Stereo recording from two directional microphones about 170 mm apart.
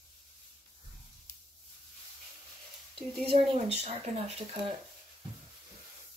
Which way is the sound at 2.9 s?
35° right (ahead or behind).